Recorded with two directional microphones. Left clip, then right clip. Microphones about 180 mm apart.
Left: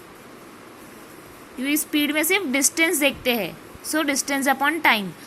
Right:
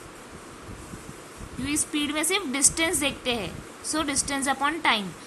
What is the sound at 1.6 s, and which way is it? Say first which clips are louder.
A woman's voice: left 5 dB; 20° left (ahead or behind).